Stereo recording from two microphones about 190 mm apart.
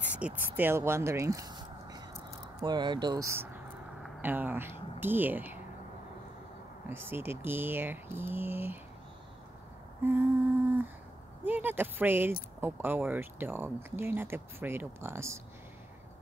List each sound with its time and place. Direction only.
0.0 s a sound: 10° right (ahead or behind)
0.6 s speech: 10° right (ahead or behind)
6.9 s speech: 10° right (ahead or behind)
10.0 s speech: 10° right (ahead or behind)
11.4 s speech: 10° right (ahead or behind)